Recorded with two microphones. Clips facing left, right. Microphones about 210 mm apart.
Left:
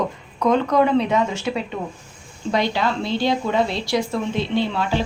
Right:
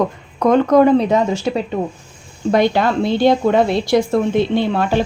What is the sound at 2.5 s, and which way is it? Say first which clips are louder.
A woman's voice: right 6 dB; 50° right (ahead or behind).